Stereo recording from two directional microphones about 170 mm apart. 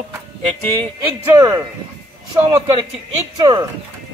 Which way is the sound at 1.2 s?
15° right (ahead or behind).